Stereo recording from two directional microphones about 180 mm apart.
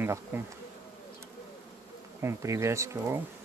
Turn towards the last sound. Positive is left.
turn(degrees=-15)  # may be behind; listen again after turning